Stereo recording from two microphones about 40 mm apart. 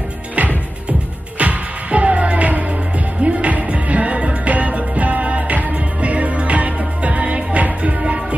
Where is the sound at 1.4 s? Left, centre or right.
Right.